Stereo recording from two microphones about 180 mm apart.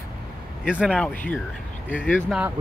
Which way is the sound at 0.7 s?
5° left (ahead or behind).